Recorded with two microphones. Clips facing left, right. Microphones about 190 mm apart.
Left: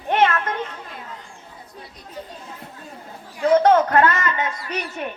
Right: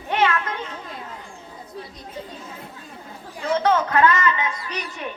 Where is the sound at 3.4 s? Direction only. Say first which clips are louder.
Left 6 dB; 50° left (ahead or behind).